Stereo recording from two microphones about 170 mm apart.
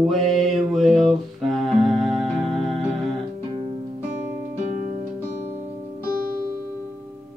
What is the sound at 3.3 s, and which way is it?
Music, 35° right (ahead or behind).